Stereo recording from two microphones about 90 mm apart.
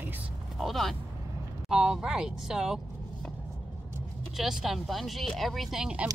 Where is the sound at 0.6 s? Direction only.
Centre (ahead or behind).